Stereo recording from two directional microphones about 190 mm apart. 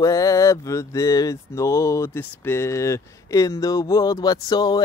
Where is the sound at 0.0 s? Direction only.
15° left (ahead or behind).